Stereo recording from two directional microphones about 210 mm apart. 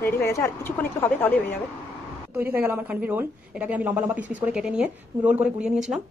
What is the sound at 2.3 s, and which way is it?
A woman's voice, 10° right (ahead or behind).